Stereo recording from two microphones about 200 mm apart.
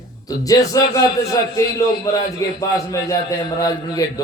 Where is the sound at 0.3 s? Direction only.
15° left (ahead or behind).